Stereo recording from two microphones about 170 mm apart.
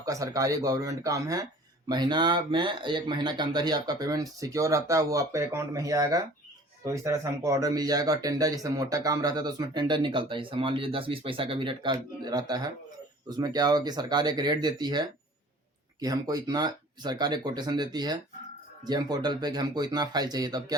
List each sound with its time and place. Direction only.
0.0 s speech: 20° right (ahead or behind)